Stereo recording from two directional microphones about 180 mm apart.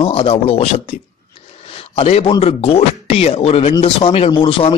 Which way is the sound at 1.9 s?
35° left (ahead or behind).